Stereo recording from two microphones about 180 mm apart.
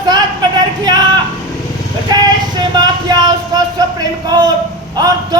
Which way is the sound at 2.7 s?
20° right (ahead or behind).